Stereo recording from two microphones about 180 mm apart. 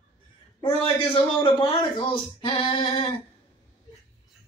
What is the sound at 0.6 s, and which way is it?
A man's voice, 30° left (ahead or behind).